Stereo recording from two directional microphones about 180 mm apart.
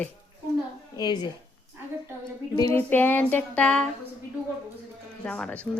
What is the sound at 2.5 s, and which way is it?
Speech, 15° left (ahead or behind).